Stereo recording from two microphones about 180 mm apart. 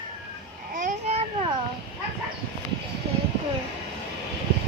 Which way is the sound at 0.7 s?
40° right (ahead or behind).